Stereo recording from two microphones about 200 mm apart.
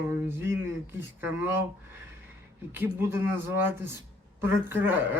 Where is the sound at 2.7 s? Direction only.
10° right (ahead or behind).